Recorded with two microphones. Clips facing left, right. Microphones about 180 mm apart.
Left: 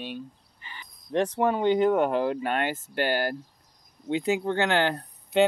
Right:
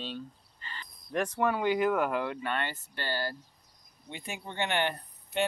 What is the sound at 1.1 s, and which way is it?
Speech, 25° left (ahead or behind).